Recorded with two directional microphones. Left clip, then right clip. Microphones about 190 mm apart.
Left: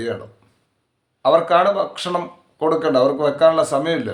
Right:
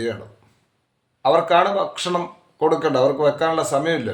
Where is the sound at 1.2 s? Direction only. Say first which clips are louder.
Left 1 dB; 15° left (ahead or behind).